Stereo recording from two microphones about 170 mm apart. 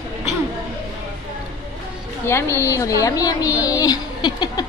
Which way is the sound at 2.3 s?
15° left (ahead or behind).